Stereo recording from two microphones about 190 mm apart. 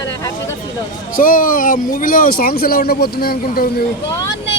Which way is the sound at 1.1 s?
50° left (ahead or behind).